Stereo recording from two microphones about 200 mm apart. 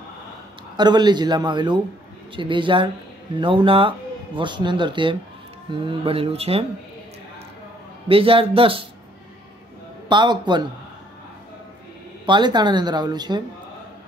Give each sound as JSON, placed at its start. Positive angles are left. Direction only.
{"t": 0.7, "sound": "speech", "side_deg": -20}
{"t": 8.1, "sound": "speech", "side_deg": -25}
{"t": 10.0, "sound": "speech", "side_deg": -20}
{"t": 12.3, "sound": "speech", "side_deg": -20}